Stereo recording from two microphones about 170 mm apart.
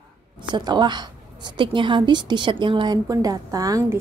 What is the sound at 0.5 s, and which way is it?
A woman's voice, 25° right (ahead or behind).